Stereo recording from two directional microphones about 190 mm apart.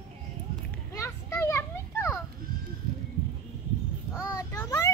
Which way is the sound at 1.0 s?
15° left (ahead or behind).